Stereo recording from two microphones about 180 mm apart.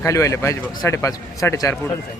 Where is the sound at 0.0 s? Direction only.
15° left (ahead or behind).